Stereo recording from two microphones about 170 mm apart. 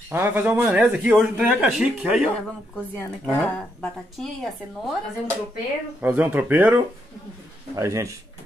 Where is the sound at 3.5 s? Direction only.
5° left (ahead or behind).